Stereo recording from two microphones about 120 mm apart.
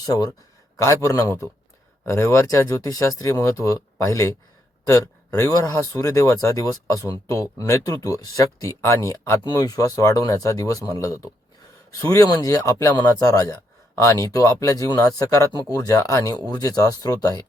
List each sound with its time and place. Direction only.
0.0 s speech: 30° left (ahead or behind)